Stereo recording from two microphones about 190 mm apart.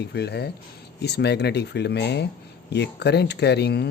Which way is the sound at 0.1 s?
60° left (ahead or behind).